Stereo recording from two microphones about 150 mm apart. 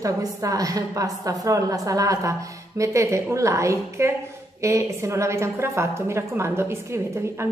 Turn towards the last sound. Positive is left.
turn(degrees=-15)  # may be behind; listen again after turning